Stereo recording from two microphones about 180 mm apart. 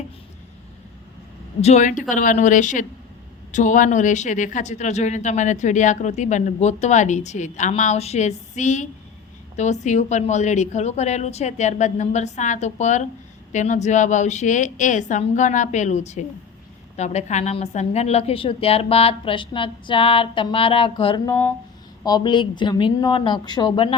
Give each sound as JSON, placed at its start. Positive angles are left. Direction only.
{"t": 1.6, "sound": "a woman's voice", "side_deg": 40}